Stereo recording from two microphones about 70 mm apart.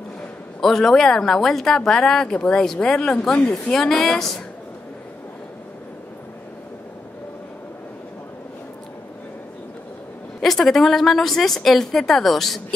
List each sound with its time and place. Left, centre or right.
0.6 s a woman's voice: centre
3.7 s a woman's voice: centre
10.4 s a woman's voice: centre